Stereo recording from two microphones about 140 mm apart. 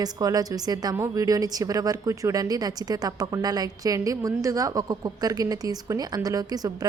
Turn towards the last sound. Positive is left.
turn(degrees=-25)  # may be behind; listen again after turning